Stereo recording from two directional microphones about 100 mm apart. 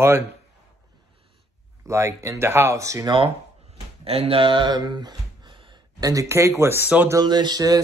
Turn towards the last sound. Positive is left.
turn(degrees=-40)  # may be behind; listen again after turning